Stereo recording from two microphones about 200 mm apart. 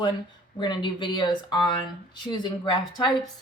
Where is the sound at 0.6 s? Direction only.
25° left (ahead or behind).